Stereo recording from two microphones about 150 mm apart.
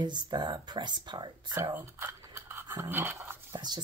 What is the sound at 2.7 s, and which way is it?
Dog, 15° right (ahead or behind).